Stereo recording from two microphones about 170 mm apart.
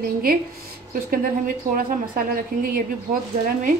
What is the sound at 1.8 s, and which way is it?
A woman's voice, 55° right (ahead or behind).